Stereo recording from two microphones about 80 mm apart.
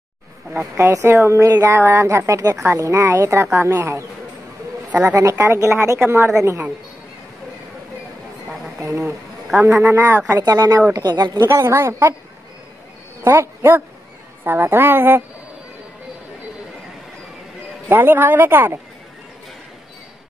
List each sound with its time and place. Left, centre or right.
0.7 s speech: right
5.0 s speech: right
8.8 s speech: right
10.4 s speech: right
11.4 s speech: right
13.2 s a man's voice: right
17.8 s speech: right